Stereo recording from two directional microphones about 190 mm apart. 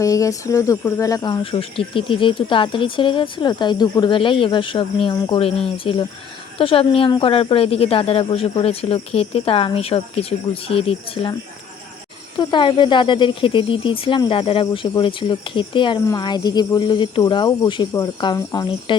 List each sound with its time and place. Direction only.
0.0 s speech: 15° left (ahead or behind)
12.4 s speech: 25° left (ahead or behind)